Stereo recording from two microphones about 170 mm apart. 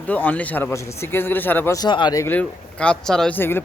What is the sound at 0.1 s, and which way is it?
Speech, 10° left (ahead or behind).